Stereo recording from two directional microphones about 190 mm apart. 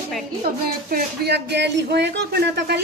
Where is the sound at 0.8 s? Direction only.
55° right (ahead or behind).